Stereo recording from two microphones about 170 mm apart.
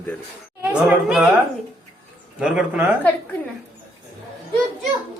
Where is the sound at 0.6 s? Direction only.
5° right (ahead or behind).